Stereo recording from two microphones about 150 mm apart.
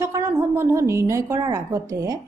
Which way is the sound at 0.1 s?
20° right (ahead or behind).